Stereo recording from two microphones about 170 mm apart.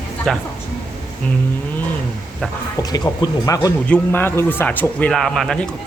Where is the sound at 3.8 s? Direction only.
10° left (ahead or behind).